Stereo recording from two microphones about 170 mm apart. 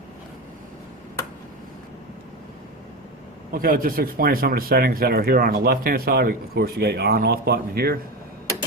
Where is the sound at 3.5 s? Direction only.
55° right (ahead or behind).